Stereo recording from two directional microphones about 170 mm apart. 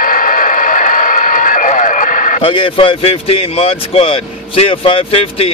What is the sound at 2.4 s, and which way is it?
Speech, 30° left (ahead or behind).